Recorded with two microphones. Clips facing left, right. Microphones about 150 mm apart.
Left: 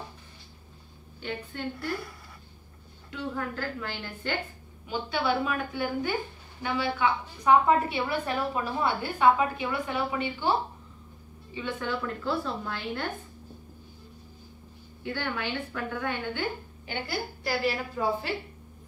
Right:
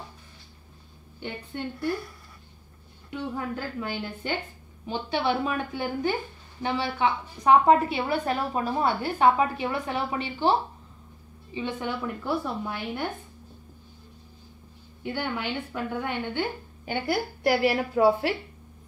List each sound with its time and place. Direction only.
1.2 s a woman's voice: 20° right (ahead or behind)
3.1 s a woman's voice: 20° right (ahead or behind)
4.8 s a woman's voice: 30° right (ahead or behind)
11.5 s a woman's voice: 20° right (ahead or behind)
15.0 s a woman's voice: 20° right (ahead or behind)
17.4 s a woman's voice: 65° right (ahead or behind)